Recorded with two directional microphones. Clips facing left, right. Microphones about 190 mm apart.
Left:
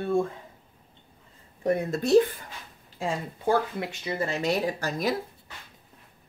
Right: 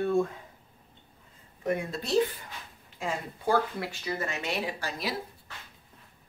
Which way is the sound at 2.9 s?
25° left (ahead or behind).